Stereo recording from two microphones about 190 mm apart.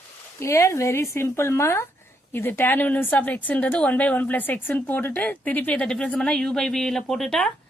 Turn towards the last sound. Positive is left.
turn(degrees=5)  # may be behind; listen again after turning